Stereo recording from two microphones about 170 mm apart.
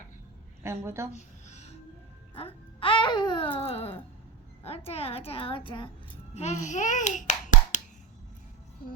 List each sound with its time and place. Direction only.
0.6 s a woman's voice: 15° right (ahead or behind)
1.1 s a sound: 40° left (ahead or behind)
2.3 s speech: 30° left (ahead or behind)
6.3 s a child's voice: 45° left (ahead or behind)